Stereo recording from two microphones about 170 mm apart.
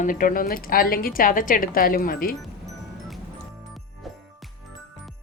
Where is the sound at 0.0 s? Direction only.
55° left (ahead or behind).